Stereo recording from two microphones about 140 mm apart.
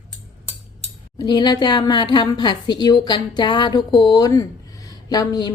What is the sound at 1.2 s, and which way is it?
A woman's voice, 30° left (ahead or behind).